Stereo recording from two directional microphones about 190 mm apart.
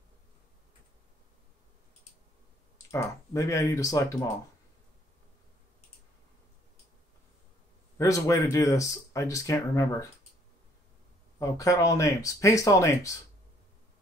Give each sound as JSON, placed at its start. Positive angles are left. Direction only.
{"t": 2.9, "sound": "speech", "side_deg": 15}
{"t": 8.0, "sound": "speech", "side_deg": 15}
{"t": 11.3, "sound": "speech", "side_deg": 15}